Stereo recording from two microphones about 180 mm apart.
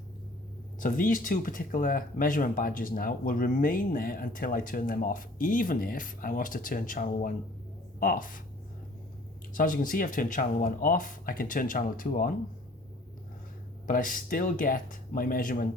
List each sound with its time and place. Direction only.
0.8 s speech: 50° left (ahead or behind)
9.5 s speech: 50° left (ahead or behind)
13.8 s speech: 50° left (ahead or behind)